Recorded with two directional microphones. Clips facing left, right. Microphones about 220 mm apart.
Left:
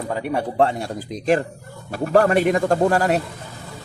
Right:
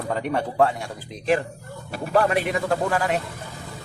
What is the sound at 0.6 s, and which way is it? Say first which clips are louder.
A man's voice: left 2 dB; 30° left (ahead or behind).